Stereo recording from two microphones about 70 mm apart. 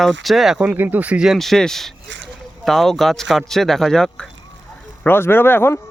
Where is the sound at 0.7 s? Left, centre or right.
Right.